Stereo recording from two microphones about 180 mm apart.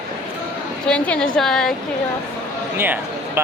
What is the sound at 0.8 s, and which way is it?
Speech, 5° left (ahead or behind).